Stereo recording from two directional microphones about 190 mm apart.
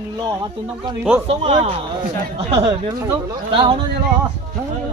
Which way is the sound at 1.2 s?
35° right (ahead or behind).